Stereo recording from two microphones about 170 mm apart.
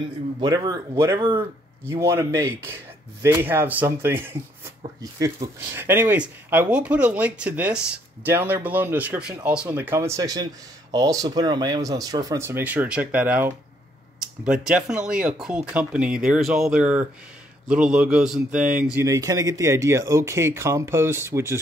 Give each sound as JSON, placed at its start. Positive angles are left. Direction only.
{"t": 0.4, "sound": "speech", "side_deg": -20}